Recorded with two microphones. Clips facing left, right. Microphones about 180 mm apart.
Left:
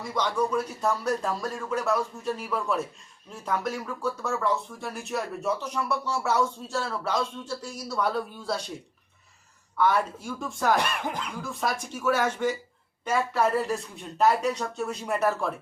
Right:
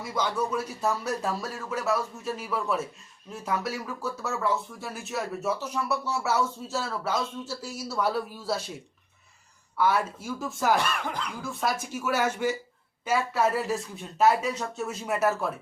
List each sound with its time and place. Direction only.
0.0 s speech: 5° right (ahead or behind)
9.7 s speech: 5° right (ahead or behind)
10.8 s music: 15° left (ahead or behind)
11.4 s speech: 5° right (ahead or behind)